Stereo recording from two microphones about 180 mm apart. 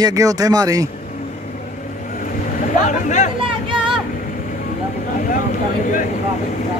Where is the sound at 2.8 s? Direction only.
45° left (ahead or behind).